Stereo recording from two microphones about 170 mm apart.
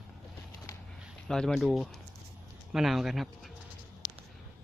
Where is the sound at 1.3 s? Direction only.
5° left (ahead or behind).